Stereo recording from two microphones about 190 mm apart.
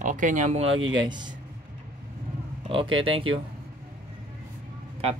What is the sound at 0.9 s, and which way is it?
Speech, 25° right (ahead or behind).